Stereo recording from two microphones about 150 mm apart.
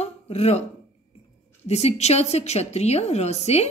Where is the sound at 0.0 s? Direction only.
45° left (ahead or behind).